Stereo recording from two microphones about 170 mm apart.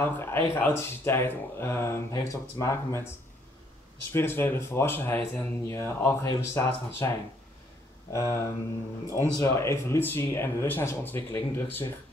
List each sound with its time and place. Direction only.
0.0 s speech: 15° left (ahead or behind)
4.1 s speech: 15° left (ahead or behind)